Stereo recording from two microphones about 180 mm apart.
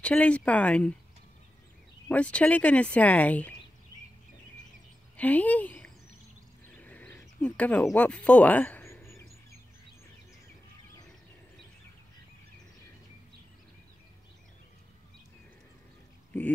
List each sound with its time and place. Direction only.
0.0 s speech: 5° left (ahead or behind)
2.0 s speech: 5° left (ahead or behind)
5.1 s speech: 10° left (ahead or behind)
6.8 s a sound: 10° left (ahead or behind)